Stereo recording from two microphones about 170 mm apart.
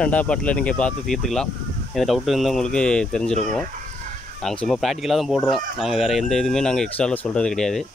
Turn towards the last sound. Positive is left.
turn(degrees=0)  # may be behind; listen again after turning